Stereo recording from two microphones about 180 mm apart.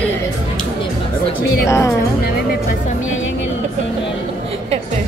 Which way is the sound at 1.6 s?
15° left (ahead or behind).